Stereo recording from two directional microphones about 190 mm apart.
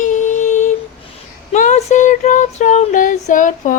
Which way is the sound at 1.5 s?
40° left (ahead or behind).